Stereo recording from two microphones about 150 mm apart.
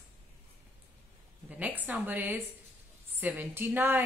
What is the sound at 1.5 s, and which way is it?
A woman's voice, 10° right (ahead or behind).